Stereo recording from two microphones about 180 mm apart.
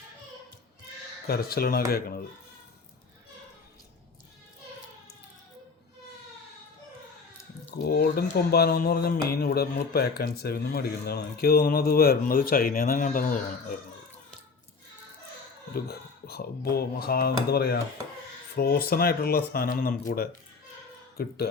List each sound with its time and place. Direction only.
1.3 s speech: 55° left (ahead or behind)
7.7 s speech: 60° left (ahead or behind)
15.7 s speech: 60° left (ahead or behind)